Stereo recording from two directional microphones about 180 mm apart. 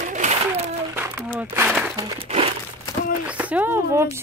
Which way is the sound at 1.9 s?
20° right (ahead or behind).